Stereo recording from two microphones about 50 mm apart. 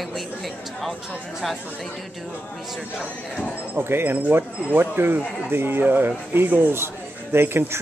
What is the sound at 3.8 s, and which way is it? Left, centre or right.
Speech, right.